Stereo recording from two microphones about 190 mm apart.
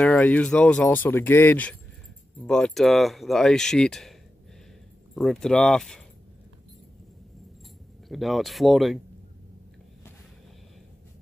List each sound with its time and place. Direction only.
0.0 s speech: 10° left (ahead or behind)
5.1 s speech: centre (ahead or behind)
8.1 s speech: centre (ahead or behind)